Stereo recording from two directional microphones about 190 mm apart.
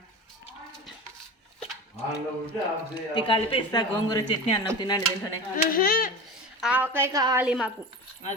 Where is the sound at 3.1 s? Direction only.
25° left (ahead or behind).